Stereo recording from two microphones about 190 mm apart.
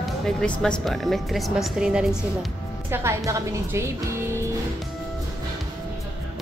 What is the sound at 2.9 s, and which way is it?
Speech, 15° right (ahead or behind).